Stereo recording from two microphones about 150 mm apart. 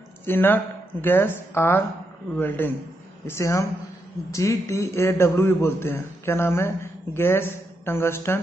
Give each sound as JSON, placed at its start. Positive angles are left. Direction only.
{"t": 0.3, "sound": "a man's voice", "side_deg": 15}